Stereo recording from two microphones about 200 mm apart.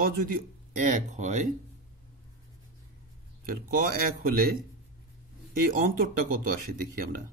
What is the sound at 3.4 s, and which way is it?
Speech, 45° right (ahead or behind).